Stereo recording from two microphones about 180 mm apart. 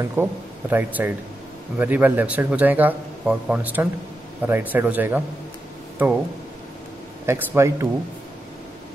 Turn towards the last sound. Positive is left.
turn(degrees=-15)  # may be behind; listen again after turning